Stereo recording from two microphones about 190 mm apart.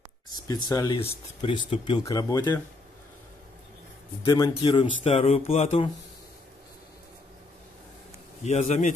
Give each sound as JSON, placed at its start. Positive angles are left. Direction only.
{"t": 0.3, "sound": "speech", "side_deg": 20}
{"t": 4.2, "sound": "speech", "side_deg": 25}
{"t": 8.5, "sound": "a man's voice", "side_deg": 35}